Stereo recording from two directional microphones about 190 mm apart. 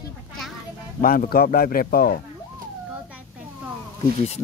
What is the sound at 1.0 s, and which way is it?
Speech, 50° left (ahead or behind).